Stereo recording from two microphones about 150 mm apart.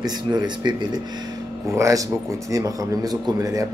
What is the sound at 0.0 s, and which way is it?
Speech, 25° right (ahead or behind).